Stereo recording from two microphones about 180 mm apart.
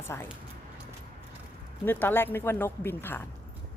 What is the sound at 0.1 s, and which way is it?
Speech, 10° left (ahead or behind).